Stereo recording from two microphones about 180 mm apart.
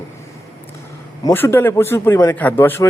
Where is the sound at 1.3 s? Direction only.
15° left (ahead or behind).